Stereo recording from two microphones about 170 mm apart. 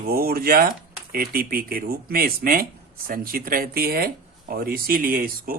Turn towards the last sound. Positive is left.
turn(degrees=-55)  # may be behind; listen again after turning